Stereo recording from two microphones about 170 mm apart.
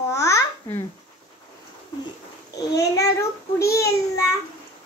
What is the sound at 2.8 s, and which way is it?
Child singing, 20° left (ahead or behind).